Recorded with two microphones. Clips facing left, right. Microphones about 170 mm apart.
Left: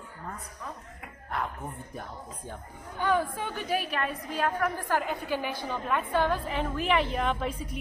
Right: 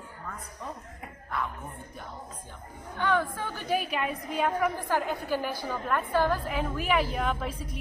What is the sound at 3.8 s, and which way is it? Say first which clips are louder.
A woman's voice: right 1 dB; 5° right (ahead or behind).